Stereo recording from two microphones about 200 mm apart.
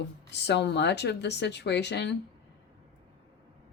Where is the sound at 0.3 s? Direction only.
60° left (ahead or behind).